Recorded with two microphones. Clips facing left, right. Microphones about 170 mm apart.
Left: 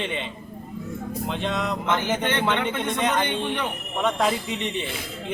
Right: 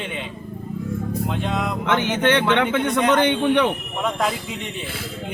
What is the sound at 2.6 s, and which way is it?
A man's voice, 75° right (ahead or behind).